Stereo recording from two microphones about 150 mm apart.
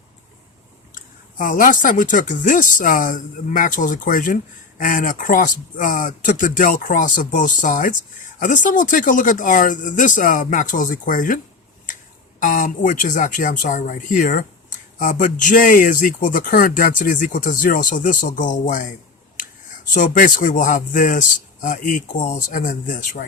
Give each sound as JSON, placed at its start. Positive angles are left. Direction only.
{"t": 0.9, "sound": "speech", "side_deg": 65}
{"t": 12.4, "sound": "speech", "side_deg": 60}
{"t": 19.9, "sound": "speech", "side_deg": 60}